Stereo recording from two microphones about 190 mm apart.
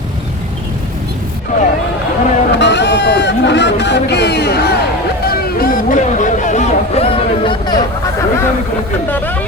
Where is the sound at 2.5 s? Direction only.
65° left (ahead or behind); by 8.5 s 15° left (ahead or behind).